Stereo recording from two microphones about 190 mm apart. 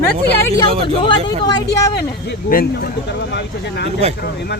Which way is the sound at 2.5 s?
50° left (ahead or behind).